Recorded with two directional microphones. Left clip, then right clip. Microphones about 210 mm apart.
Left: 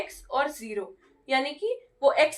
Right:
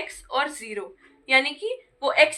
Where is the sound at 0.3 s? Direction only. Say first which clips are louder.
Right 2 dB; 35° left (ahead or behind).